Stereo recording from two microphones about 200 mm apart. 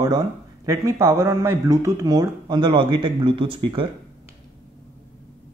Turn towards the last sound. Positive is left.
turn(degrees=-25)  # may be behind; listen again after turning